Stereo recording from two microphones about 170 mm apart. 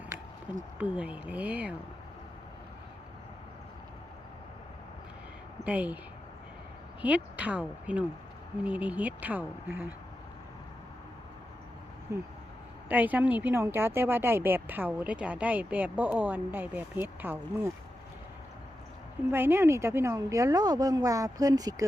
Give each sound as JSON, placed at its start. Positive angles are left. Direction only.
{"t": 0.8, "sound": "a woman's voice", "side_deg": -10}
{"t": 5.6, "sound": "a woman's voice", "side_deg": -10}
{"t": 7.0, "sound": "a woman's voice", "side_deg": -10}
{"t": 12.1, "sound": "a woman's voice", "side_deg": -15}
{"t": 19.3, "sound": "speech", "side_deg": -15}